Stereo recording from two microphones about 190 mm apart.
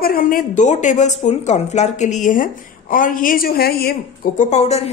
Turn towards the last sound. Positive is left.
turn(degrees=35)  # may be behind; listen again after turning